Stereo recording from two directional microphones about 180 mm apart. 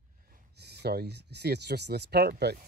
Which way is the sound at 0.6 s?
65° right (ahead or behind).